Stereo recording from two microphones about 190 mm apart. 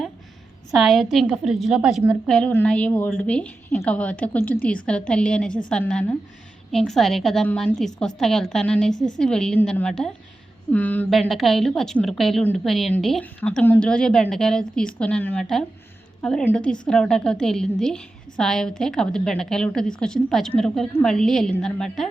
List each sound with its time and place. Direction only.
0.7 s a woman's voice: centre (ahead or behind)